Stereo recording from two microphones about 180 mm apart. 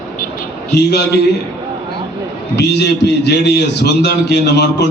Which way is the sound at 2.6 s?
70° left (ahead or behind).